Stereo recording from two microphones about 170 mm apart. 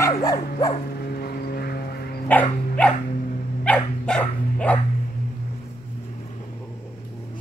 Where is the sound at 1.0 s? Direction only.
65° left (ahead or behind).